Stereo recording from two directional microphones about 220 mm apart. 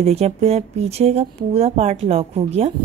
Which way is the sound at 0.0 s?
30° right (ahead or behind).